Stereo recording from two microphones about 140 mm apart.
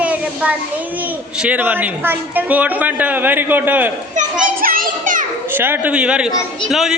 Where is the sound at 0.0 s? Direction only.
10° right (ahead or behind).